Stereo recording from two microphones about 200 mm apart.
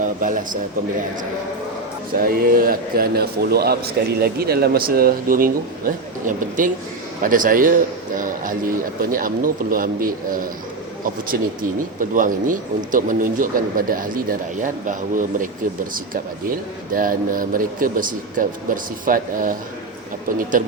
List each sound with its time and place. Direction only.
0.0 s a man's voice: 40° right (ahead or behind)
2.1 s speech: 45° right (ahead or behind)
11.9 s speech: 40° right (ahead or behind)
20.6 s speech: 40° right (ahead or behind)